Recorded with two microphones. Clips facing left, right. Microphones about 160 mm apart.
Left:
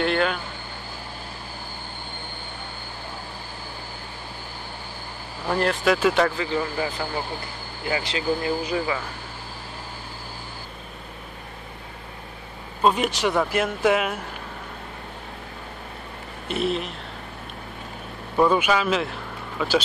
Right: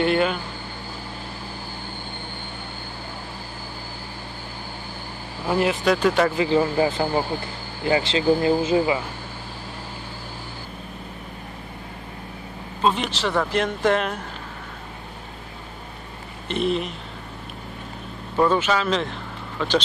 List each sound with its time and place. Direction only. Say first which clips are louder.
0.0 s speech: right 2 dB; 5° right (ahead or behind)
5.5 s speech: right 1 dB; 5° right (ahead or behind)
6.3 s speech: right 6 dB; 20° right (ahead or behind)
6.6 s speech: right 6 dB; 35° right (ahead or behind)
7.9 s speech: right 6 dB; 25° right (ahead or behind)
12.8 s speech: left 2 dB; 5° left (ahead or behind)
16.4 s speech: right 2 dB; 5° left (ahead or behind)
18.3 s speech: even; 10° left (ahead or behind)